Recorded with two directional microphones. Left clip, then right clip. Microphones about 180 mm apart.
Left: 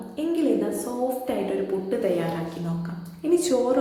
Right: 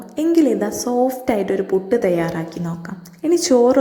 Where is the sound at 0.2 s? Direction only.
50° right (ahead or behind).